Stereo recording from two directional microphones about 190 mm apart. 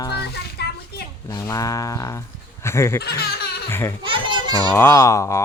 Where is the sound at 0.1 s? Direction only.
60° left (ahead or behind).